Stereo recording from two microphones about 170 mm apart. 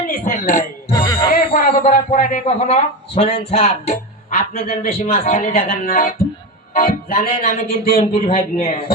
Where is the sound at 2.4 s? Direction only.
35° left (ahead or behind); by 6.1 s 55° left (ahead or behind).